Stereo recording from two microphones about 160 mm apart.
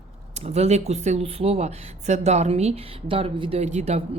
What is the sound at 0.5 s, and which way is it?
Speech, 40° right (ahead or behind).